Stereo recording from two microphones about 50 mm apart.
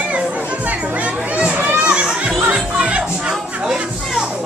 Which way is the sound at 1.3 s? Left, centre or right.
Right.